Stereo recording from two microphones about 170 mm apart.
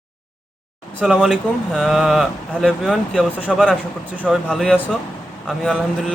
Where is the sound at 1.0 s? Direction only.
5° right (ahead or behind).